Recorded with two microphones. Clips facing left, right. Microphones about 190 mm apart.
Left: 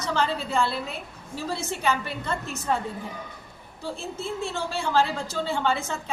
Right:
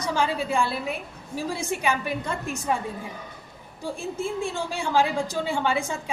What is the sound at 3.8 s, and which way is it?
A woman's voice, 15° right (ahead or behind).